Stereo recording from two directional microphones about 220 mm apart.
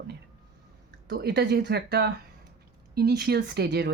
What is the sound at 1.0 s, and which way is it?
Speech, 50° right (ahead or behind).